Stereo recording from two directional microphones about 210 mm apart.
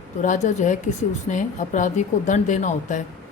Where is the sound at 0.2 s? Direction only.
35° left (ahead or behind).